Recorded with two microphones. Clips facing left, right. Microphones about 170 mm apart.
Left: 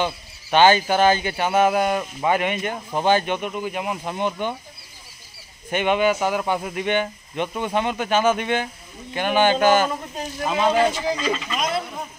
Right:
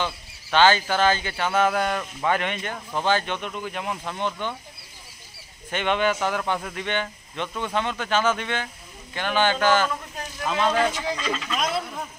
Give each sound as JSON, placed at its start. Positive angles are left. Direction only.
{"t": 0.0, "sound": "speech", "side_deg": 15}
{"t": 5.7, "sound": "speech", "side_deg": 10}
{"t": 11.1, "sound": "speech", "side_deg": 5}